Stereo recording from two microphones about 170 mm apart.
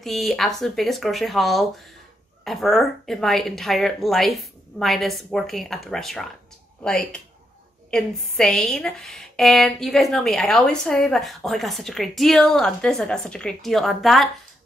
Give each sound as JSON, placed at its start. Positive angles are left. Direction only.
{"t": 0.0, "sound": "a woman's voice", "side_deg": 0}